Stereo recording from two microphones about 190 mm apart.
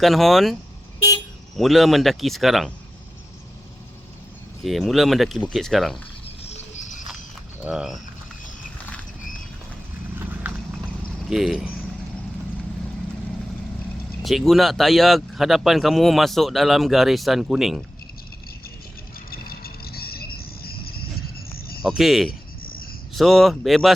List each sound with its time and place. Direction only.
0.0 s speech: centre (ahead or behind)
1.5 s speech: centre (ahead or behind)
4.6 s speech: centre (ahead or behind)
6.2 s cricket: 35° left (ahead or behind)
7.6 s speech: 5° right (ahead or behind)
11.3 s speech: centre (ahead or behind)
14.2 s speech: centre (ahead or behind)
19.3 s cricket: 50° left (ahead or behind)
21.8 s speech: centre (ahead or behind)
22.3 s cricket: 50° left (ahead or behind)
23.1 s speech: centre (ahead or behind)